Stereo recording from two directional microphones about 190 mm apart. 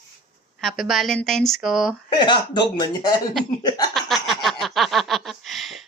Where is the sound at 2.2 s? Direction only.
25° left (ahead or behind).